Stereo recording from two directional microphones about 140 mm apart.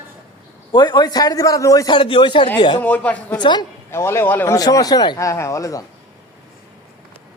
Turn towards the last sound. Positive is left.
turn(degrees=25)  # may be behind; listen again after turning